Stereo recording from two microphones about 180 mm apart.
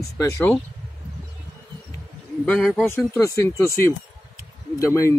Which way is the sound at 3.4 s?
15° left (ahead or behind).